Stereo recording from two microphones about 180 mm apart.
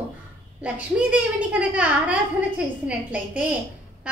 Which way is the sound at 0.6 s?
5° right (ahead or behind).